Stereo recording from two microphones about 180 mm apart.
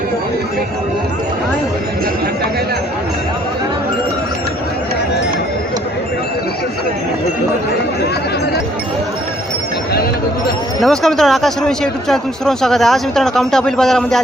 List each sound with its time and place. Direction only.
10.8 s speech: centre (ahead or behind)